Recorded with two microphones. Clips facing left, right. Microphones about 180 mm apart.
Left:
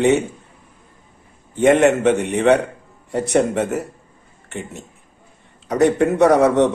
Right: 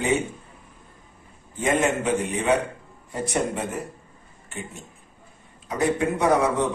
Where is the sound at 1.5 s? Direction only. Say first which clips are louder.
Left 9 dB; 75° left (ahead or behind).